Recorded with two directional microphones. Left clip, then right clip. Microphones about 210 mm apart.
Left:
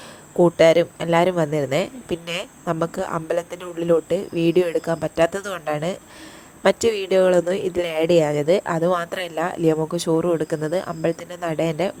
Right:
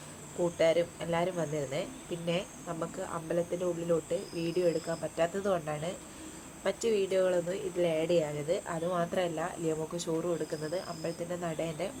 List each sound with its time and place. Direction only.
0.4 s speech: 50° left (ahead or behind)